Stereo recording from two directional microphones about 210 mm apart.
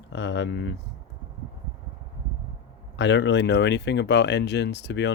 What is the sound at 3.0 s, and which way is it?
Speech, 60° left (ahead or behind).